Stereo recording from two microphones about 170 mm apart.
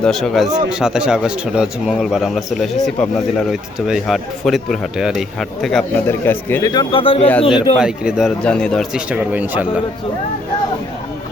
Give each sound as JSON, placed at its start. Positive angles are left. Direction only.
{"t": 0.0, "sound": "speech", "side_deg": 0}
{"t": 6.1, "sound": "speech", "side_deg": 15}
{"t": 6.7, "sound": "a man's voice", "side_deg": 25}
{"t": 7.8, "sound": "speech", "side_deg": -5}